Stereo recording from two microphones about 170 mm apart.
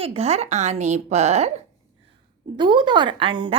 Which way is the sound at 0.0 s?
35° right (ahead or behind).